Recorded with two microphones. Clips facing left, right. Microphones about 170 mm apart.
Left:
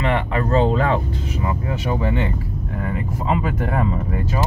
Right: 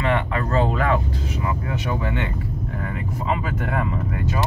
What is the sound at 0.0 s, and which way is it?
Speech, 30° left (ahead or behind).